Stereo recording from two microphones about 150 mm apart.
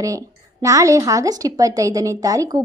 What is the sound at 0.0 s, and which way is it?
A woman's voice, 20° right (ahead or behind).